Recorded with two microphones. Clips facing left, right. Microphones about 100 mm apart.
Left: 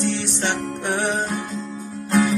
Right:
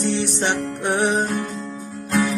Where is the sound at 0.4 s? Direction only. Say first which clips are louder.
Right 2 dB; 20° right (ahead or behind).